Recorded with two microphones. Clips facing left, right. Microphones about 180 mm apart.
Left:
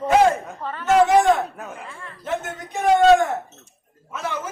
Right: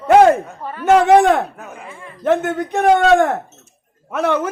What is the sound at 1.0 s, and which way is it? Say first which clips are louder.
Speech: right 5 dB; 65° right (ahead or behind).